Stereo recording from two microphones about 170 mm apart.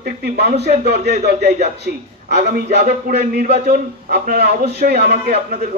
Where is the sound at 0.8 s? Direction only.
70° right (ahead or behind).